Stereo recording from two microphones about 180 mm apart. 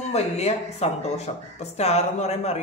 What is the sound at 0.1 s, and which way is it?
Speech, 35° left (ahead or behind).